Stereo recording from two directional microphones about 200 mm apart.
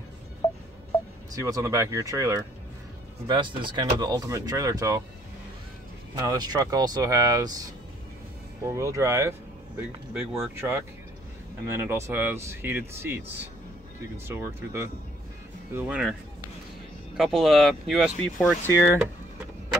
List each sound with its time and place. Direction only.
1.3 s speech: 15° right (ahead or behind)
6.1 s speech: 20° right (ahead or behind); by 16.2 s 5° right (ahead or behind)
17.2 s speech: centre (ahead or behind)
18.7 s speech: 15° left (ahead or behind)